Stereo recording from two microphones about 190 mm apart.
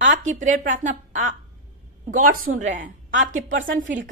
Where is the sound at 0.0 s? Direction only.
40° right (ahead or behind).